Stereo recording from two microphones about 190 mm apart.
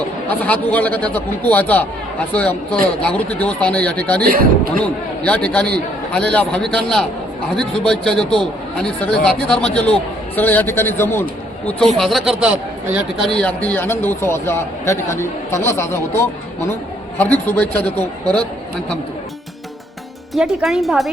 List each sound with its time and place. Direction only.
0.3 s a man's voice: 10° left (ahead or behind)
4.2 s speech: 50° right (ahead or behind)
4.8 s a man's voice: 5° left (ahead or behind)
20.3 s a man's voice: centre (ahead or behind)